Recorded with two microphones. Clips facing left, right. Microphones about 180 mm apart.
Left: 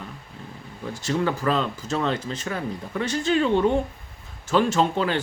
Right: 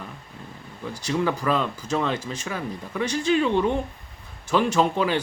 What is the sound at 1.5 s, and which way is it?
Speech, 10° right (ahead or behind).